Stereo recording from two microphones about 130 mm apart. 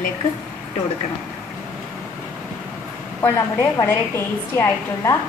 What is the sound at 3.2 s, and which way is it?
A woman's voice, 20° left (ahead or behind).